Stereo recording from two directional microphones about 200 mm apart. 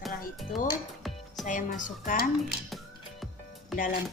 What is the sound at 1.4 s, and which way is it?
Speech, 40° left (ahead or behind).